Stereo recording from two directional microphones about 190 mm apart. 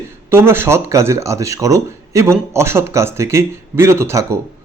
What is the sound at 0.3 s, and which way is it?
Speech, 10° right (ahead or behind).